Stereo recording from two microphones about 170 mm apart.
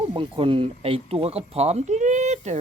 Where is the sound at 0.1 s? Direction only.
30° right (ahead or behind).